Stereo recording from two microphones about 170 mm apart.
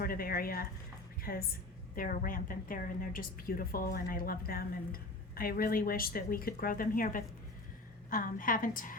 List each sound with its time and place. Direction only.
0.0 s a woman's voice: 60° left (ahead or behind)